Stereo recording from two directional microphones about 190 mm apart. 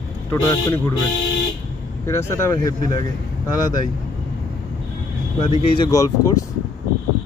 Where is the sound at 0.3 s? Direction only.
15° left (ahead or behind).